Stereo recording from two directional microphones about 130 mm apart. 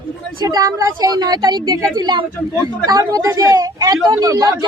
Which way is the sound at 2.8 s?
30° right (ahead or behind).